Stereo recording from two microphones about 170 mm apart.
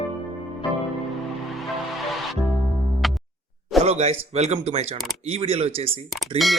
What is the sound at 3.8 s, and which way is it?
Speech, 40° right (ahead or behind).